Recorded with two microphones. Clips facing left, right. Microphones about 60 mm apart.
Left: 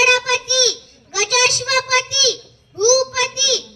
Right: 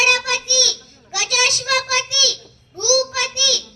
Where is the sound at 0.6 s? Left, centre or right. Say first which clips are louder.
Left 6 dB; right.